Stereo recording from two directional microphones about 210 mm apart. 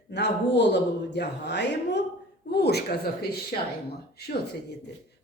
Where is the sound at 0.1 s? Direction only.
55° left (ahead or behind).